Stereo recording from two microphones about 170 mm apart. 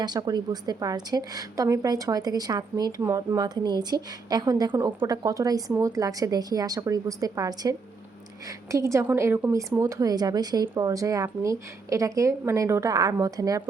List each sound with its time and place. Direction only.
0.0 s a woman's voice: 25° right (ahead or behind)
4.9 s a woman's voice: 10° right (ahead or behind)